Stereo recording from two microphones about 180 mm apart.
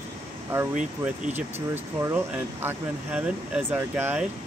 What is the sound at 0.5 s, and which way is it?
Speech, 10° right (ahead or behind).